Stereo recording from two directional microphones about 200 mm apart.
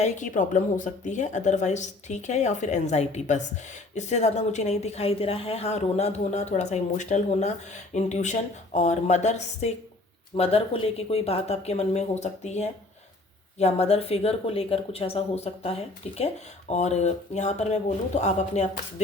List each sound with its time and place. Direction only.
0.0 s a woman's voice: 40° left (ahead or behind)